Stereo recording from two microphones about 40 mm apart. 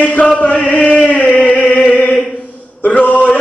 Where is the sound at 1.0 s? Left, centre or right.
Left.